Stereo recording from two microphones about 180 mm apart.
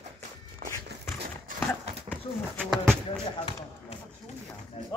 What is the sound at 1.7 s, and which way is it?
Horse, 10° left (ahead or behind).